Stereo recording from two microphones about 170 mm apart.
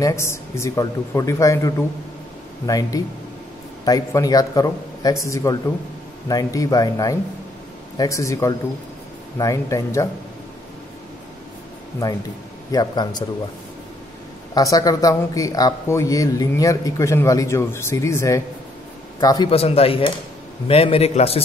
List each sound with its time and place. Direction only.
0.0 s a man's voice: 15° left (ahead or behind)
12.7 s a man's voice: 25° left (ahead or behind)
14.5 s a man's voice: 20° left (ahead or behind)
19.5 s a man's voice: 35° left (ahead or behind)